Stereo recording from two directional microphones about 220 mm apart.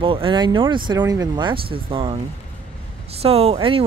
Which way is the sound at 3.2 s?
25° right (ahead or behind).